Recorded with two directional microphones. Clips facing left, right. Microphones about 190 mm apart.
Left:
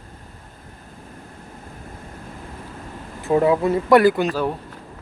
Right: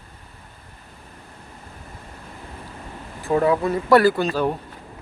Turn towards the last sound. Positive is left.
turn(degrees=5)  # may be behind; listen again after turning